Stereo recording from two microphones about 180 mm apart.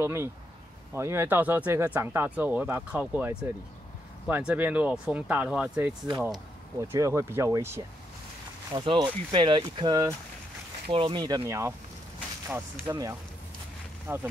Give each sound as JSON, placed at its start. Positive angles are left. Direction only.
{"t": 0.0, "sound": "speech", "side_deg": -15}
{"t": 8.7, "sound": "speech", "side_deg": -25}
{"t": 14.1, "sound": "speech", "side_deg": -10}